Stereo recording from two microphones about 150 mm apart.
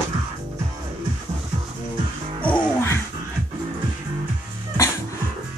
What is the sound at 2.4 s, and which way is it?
Music, 10° left (ahead or behind).